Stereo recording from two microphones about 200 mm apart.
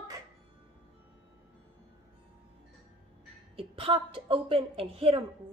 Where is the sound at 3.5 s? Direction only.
25° right (ahead or behind).